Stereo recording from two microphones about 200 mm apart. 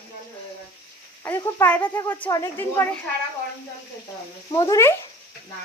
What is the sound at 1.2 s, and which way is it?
Speech, 10° left (ahead or behind).